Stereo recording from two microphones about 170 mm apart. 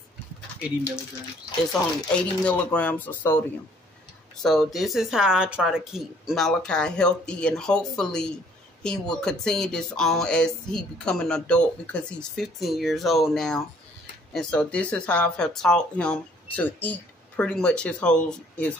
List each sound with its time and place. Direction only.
1.7 s speech: 5° left (ahead or behind)